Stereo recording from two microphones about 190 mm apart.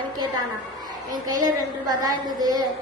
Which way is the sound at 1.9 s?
20° right (ahead or behind).